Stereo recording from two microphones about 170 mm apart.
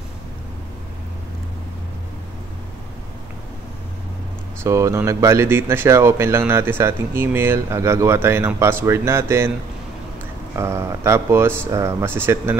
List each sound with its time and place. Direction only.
4.6 s speech: 15° right (ahead or behind)
10.5 s speech: 15° right (ahead or behind)